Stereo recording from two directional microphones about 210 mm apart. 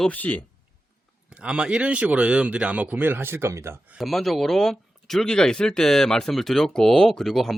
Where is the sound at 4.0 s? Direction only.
Centre (ahead or behind).